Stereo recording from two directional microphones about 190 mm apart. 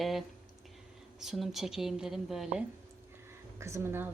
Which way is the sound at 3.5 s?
15° right (ahead or behind).